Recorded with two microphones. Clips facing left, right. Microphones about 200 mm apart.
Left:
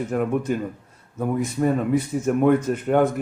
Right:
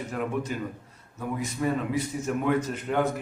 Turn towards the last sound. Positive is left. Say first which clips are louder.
# left 7 dB
turn(degrees=55)  # may be behind; listen again after turning